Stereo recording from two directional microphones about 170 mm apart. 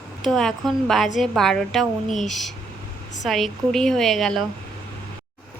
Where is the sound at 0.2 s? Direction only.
Centre (ahead or behind).